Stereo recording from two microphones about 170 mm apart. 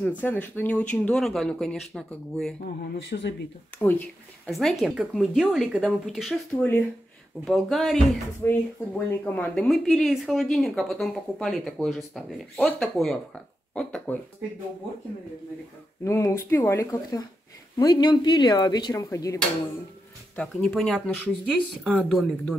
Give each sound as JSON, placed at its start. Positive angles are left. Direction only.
{"t": 0.2, "sound": "speech", "side_deg": 10}
{"t": 3.0, "sound": "speech", "side_deg": 90}
{"t": 4.5, "sound": "speech", "side_deg": 0}
{"t": 8.5, "sound": "speech", "side_deg": 10}
{"t": 16.0, "sound": "speech", "side_deg": 15}
{"t": 20.3, "sound": "speech", "side_deg": 0}